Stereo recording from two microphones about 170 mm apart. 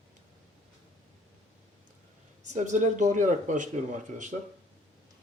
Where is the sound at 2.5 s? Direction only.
45° right (ahead or behind).